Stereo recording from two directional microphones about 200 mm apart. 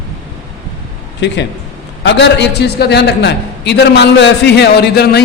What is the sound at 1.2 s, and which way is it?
A man's voice, 60° left (ahead or behind).